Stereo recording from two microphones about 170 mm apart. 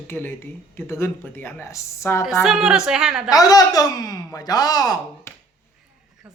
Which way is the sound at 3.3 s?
20° left (ahead or behind).